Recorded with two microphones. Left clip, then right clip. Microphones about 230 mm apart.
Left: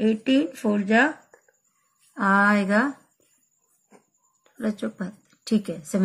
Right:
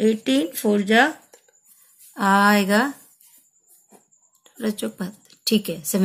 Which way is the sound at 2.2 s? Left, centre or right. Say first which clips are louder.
Right 3 dB; right.